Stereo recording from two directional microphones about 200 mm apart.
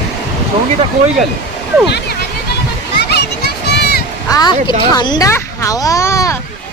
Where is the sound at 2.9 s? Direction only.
55° left (ahead or behind).